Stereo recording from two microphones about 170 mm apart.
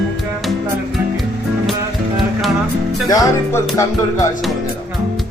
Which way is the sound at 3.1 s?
20° left (ahead or behind).